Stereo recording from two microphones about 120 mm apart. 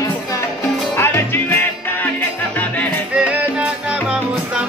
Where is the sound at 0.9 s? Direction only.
20° left (ahead or behind).